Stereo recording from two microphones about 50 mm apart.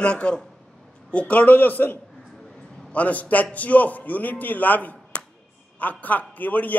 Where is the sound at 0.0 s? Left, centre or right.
Left.